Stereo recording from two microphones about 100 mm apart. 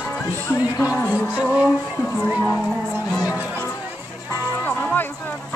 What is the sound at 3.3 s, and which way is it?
Music, 20° right (ahead or behind).